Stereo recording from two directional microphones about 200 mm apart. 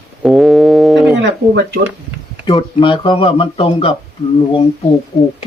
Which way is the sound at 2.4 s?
25° left (ahead or behind).